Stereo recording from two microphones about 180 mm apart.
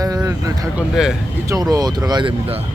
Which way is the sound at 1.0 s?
5° right (ahead or behind).